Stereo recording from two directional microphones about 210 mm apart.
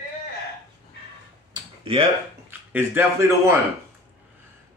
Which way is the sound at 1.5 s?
25° right (ahead or behind).